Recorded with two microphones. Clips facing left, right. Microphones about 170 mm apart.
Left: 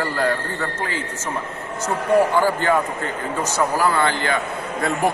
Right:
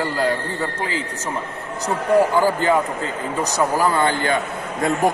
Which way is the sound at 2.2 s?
15° right (ahead or behind).